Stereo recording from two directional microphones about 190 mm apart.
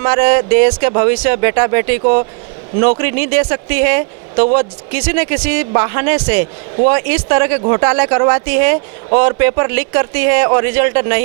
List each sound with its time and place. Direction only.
0.0 s speech: 15° right (ahead or behind)
3.0 s speech: 15° right (ahead or behind)